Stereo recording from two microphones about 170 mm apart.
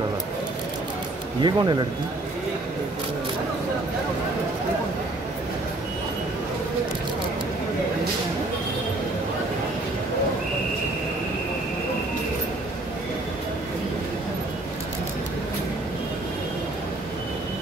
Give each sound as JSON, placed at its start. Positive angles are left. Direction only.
{"t": 1.4, "sound": "speech", "side_deg": -25}